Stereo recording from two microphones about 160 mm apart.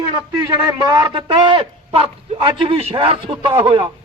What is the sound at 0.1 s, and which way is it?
A man's voice, 20° right (ahead or behind).